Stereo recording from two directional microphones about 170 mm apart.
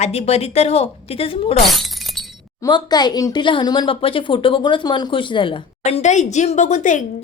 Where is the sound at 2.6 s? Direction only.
25° left (ahead or behind).